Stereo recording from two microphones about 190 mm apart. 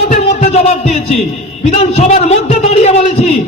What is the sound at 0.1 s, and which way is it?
Music, 40° left (ahead or behind).